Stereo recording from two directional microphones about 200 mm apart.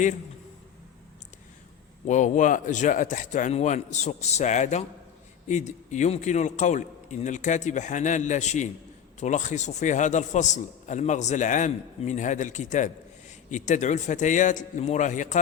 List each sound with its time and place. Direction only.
2.0 s a man's voice: 35° left (ahead or behind)